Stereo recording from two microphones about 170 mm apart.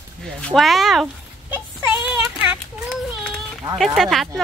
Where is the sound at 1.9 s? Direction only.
10° right (ahead or behind).